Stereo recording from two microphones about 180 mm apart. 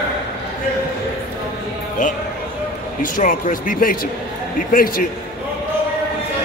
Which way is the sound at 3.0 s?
50° left (ahead or behind).